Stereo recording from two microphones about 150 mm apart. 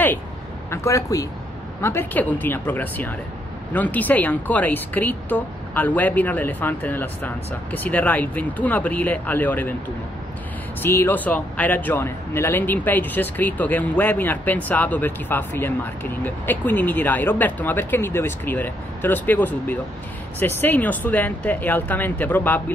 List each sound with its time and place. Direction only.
0.7 s a man's voice: 20° left (ahead or behind)
10.8 s a man's voice: 15° left (ahead or behind)